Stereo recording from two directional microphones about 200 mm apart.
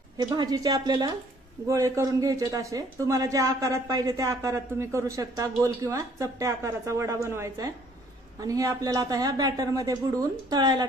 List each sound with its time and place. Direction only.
0.2 s speech: 20° right (ahead or behind)